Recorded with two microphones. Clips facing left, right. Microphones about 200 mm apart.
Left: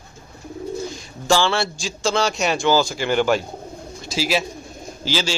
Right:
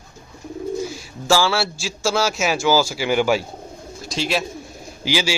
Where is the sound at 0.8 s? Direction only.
5° right (ahead or behind).